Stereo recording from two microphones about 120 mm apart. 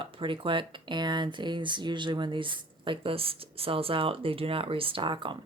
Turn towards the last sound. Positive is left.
turn(degrees=-45)  # may be behind; listen again after turning